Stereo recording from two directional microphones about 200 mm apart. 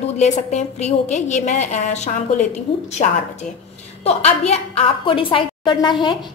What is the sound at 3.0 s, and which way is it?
A woman's voice, 35° left (ahead or behind).